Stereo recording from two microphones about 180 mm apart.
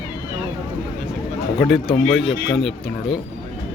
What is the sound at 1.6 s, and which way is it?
Speech, centre (ahead or behind).